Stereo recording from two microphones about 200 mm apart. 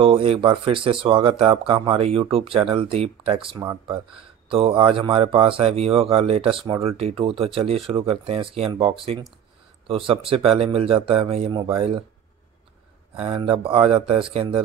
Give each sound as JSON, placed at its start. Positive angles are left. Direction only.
{"t": 0.0, "sound": "speech", "side_deg": -30}
{"t": 13.1, "sound": "speech", "side_deg": -30}